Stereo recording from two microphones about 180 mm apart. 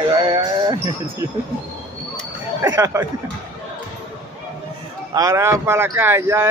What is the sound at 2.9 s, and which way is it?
Speech, 15° right (ahead or behind).